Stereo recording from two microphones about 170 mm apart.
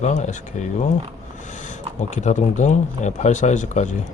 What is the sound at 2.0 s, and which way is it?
Speech, 45° left (ahead or behind).